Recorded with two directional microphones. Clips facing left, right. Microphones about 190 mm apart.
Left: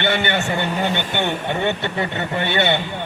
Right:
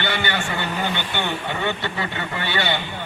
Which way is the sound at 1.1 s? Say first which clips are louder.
Left 4 dB; 50° left (ahead or behind).